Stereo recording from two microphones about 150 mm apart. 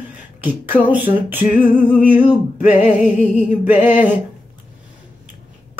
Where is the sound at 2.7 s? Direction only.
55° left (ahead or behind).